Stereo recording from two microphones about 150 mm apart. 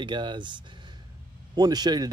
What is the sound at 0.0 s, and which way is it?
Speech, 30° right (ahead or behind).